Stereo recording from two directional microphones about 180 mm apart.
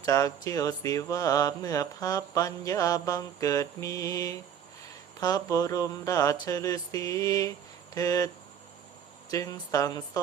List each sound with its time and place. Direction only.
0.0 s mantra: 20° left (ahead or behind)
9.3 s mantra: 20° left (ahead or behind)